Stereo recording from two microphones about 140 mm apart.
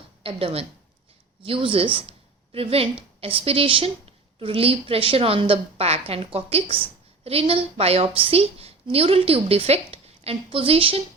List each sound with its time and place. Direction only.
0.2 s a woman's voice: 40° right (ahead or behind)